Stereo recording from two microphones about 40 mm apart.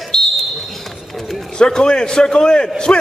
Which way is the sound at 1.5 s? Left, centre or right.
Left.